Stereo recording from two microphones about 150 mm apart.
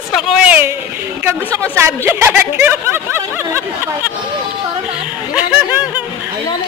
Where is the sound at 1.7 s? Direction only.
15° right (ahead or behind).